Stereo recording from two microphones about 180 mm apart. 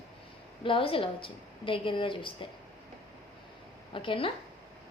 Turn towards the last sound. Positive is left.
turn(degrees=30)  # may be behind; listen again after turning